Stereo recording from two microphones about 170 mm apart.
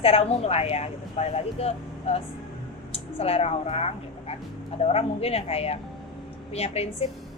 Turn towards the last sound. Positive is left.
turn(degrees=35)  # may be behind; listen again after turning